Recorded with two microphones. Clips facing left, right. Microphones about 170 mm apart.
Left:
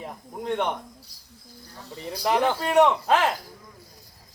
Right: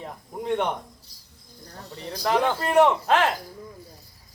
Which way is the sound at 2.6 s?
Centre (ahead or behind).